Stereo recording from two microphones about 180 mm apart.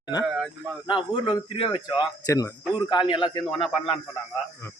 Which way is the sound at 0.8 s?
30° left (ahead or behind).